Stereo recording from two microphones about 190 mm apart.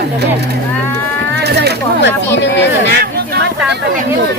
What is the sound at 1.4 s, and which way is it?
Speech, 60° right (ahead or behind).